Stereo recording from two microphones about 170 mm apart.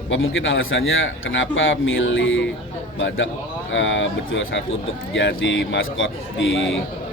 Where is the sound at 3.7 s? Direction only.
90° left.